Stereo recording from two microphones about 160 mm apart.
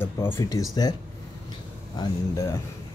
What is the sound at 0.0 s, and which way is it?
Speech, 15° left (ahead or behind).